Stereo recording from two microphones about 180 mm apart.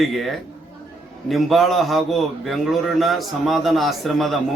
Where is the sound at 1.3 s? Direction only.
Centre (ahead or behind).